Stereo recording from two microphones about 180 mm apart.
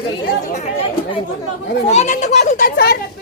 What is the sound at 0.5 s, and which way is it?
A child's voice, 30° left (ahead or behind).